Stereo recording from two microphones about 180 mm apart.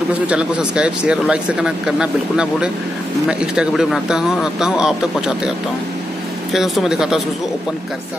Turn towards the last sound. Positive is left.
turn(degrees=-5)  # may be behind; listen again after turning